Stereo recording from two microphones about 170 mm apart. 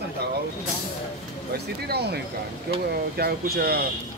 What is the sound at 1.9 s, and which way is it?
Speech, 70° right (ahead or behind).